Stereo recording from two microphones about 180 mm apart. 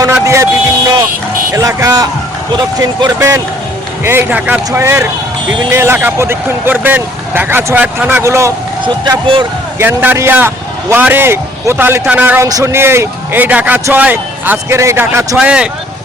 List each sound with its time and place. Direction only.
0.0 s a sound: 15° right (ahead or behind)
1.5 s a man's voice: 20° right (ahead or behind)
8.8 s speech: 25° right (ahead or behind)
9.7 s a man's voice: 10° right (ahead or behind)